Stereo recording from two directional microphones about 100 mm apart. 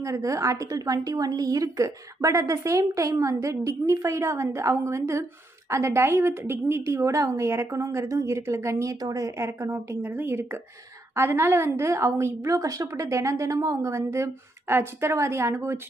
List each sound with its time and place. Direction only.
0.0 s a woman's voice: 30° right (ahead or behind)